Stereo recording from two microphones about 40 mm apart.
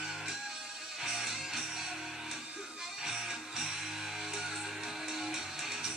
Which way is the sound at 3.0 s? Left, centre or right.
Centre.